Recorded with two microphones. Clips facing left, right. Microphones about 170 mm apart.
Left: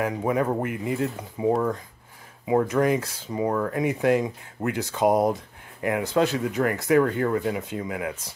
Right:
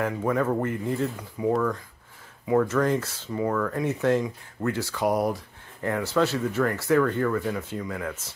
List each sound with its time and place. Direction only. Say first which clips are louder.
0.0 s speech: left 1 dB; 15° left (ahead or behind)
1.1 s speech: left 2 dB; 25° left (ahead or behind)